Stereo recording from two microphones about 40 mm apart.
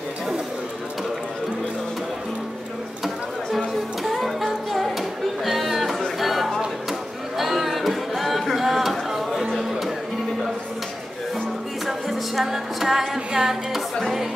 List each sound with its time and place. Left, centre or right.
3.5 s music: centre
6.1 s chatter: centre
6.9 s music: centre
11.8 s music: centre
13.3 s music: centre